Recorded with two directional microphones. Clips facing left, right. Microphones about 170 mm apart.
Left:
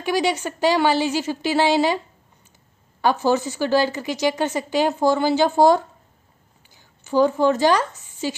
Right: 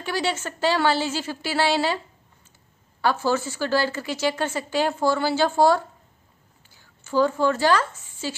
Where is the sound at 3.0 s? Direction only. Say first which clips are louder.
Left 3 dB; 15° left (ahead or behind).